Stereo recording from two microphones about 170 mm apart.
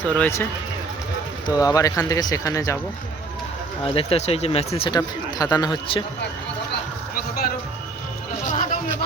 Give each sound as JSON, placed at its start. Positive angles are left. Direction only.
{"t": 0.1, "sound": "speech", "side_deg": 10}
{"t": 1.5, "sound": "speech", "side_deg": 20}
{"t": 3.9, "sound": "speech", "side_deg": 35}
{"t": 4.9, "sound": "speech", "side_deg": 20}
{"t": 8.4, "sound": "a sound", "side_deg": 50}